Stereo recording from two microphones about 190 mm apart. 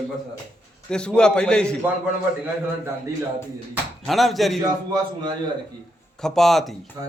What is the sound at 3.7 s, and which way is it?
Speech, centre (ahead or behind).